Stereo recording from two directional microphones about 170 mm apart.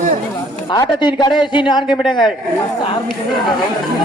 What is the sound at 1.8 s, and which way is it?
Speech, centre (ahead or behind).